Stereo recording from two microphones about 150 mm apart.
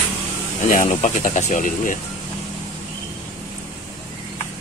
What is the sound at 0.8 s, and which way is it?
Speech, 55° left (ahead or behind).